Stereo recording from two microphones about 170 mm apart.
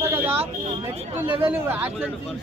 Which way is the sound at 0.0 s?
15° right (ahead or behind).